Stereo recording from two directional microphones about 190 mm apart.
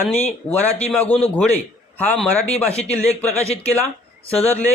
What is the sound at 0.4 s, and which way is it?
A man's voice, 10° left (ahead or behind).